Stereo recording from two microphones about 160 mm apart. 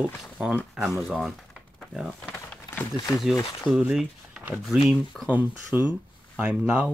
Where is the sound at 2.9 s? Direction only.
20° left (ahead or behind).